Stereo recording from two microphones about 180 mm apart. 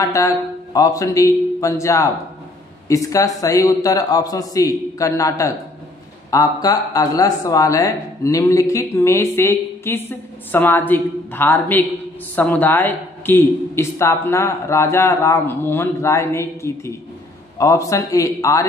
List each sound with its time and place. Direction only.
0.0 s a man's voice: 15° left (ahead or behind)